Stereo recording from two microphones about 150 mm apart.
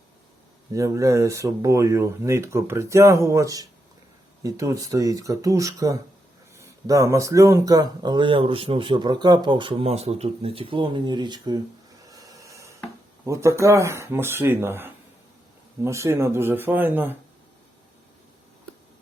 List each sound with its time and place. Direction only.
0.7 s speech: 20° right (ahead or behind)
12.0 s a sound: 25° right (ahead or behind)
13.2 s speech: 20° right (ahead or behind)